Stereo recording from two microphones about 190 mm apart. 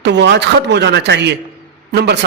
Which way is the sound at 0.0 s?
65° right (ahead or behind).